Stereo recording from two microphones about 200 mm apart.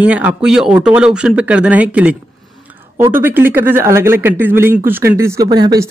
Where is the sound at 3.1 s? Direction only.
10° right (ahead or behind).